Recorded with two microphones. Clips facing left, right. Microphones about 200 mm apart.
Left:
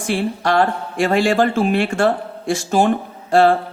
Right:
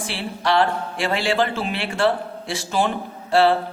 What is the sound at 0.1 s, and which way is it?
Speech, 45° left (ahead or behind).